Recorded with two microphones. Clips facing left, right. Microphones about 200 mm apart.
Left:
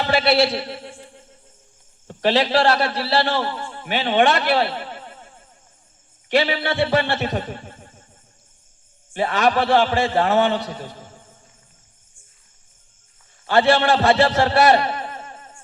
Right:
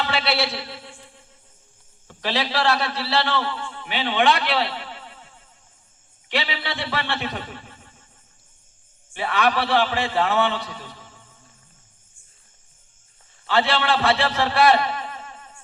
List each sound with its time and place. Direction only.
0.0 s a man's voice: 45° left (ahead or behind)
0.7 s a sound: 50° left (ahead or behind)
2.0 s a man's voice: 50° left (ahead or behind)
9.1 s a man's voice: 45° left (ahead or behind)
13.5 s a man's voice: 45° left (ahead or behind)